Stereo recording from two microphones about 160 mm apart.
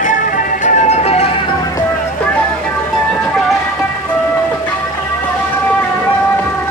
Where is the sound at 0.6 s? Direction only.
45° left (ahead or behind).